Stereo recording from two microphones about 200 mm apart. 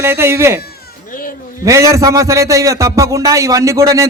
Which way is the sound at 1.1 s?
45° left (ahead or behind).